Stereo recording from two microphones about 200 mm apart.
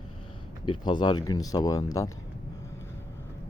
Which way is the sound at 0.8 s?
20° left (ahead or behind).